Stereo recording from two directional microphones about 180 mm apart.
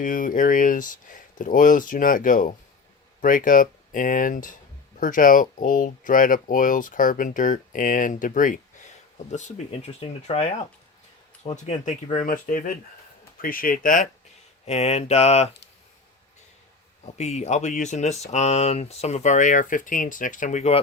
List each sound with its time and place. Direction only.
0.0 s speech: 50° left (ahead or behind)
14.6 s speech: 35° left (ahead or behind)
17.2 s speech: 40° left (ahead or behind)